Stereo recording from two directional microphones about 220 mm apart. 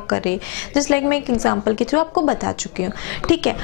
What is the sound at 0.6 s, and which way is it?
A woman's voice, 10° left (ahead or behind).